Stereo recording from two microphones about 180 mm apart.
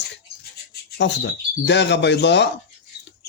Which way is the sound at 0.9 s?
80° left.